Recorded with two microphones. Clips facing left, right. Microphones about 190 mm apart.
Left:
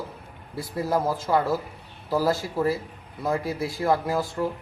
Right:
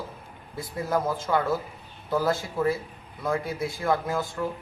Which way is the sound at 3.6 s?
25° left (ahead or behind).